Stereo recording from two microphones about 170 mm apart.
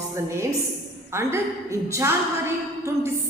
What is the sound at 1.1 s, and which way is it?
A man's voice, 15° right (ahead or behind).